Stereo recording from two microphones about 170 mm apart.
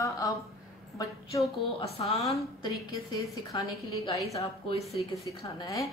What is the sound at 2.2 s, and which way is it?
Speech, centre (ahead or behind).